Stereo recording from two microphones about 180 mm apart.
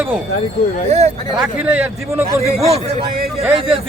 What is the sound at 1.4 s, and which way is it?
Speech, 10° right (ahead or behind).